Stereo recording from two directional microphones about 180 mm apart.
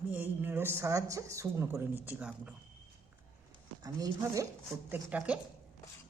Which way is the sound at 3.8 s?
20° right (ahead or behind).